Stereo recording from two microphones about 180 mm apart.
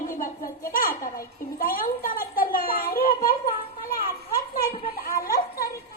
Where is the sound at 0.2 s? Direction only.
50° left (ahead or behind).